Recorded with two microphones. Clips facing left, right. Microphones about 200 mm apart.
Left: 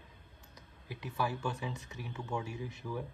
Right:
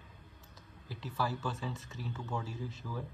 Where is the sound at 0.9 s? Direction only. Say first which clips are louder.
Even; 15° left (ahead or behind).